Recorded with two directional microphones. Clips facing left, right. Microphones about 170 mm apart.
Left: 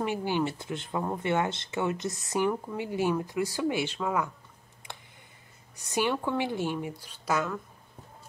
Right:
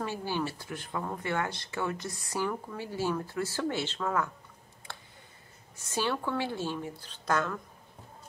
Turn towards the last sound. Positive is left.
turn(degrees=5)  # may be behind; listen again after turning